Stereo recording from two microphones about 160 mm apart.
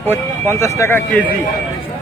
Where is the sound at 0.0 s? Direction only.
15° left (ahead or behind).